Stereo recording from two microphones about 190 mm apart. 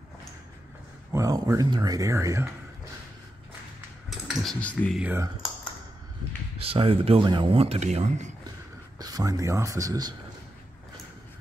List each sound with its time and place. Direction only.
1.1 s speech: 15° right (ahead or behind)
4.1 s speech: centre (ahead or behind)
5.0 s speech: 10° right (ahead or behind)
6.6 s speech: 30° right (ahead or behind)
8.9 s speech: 20° right (ahead or behind)